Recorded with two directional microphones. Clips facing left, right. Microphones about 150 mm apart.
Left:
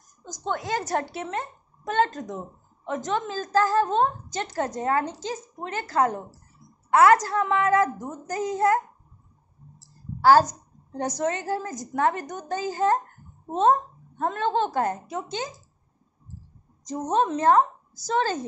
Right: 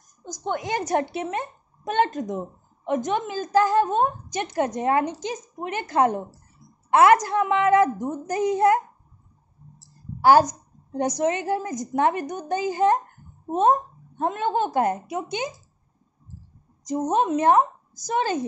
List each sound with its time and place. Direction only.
0.2 s a woman's voice: 15° right (ahead or behind)
10.9 s a woman's voice: 15° right (ahead or behind)
16.8 s a woman's voice: 10° right (ahead or behind)